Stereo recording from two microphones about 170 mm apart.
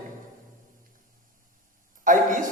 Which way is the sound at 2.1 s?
50° right (ahead or behind).